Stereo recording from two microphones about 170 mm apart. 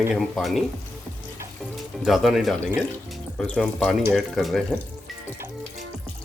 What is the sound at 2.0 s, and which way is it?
Speech, centre (ahead or behind).